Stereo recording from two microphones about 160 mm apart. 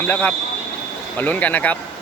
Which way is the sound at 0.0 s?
10° left (ahead or behind).